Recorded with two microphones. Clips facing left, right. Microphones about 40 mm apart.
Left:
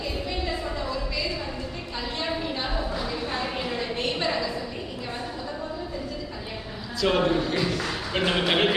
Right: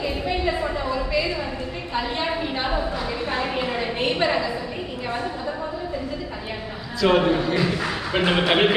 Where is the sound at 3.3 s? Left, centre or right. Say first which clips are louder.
Right 6 dB; right.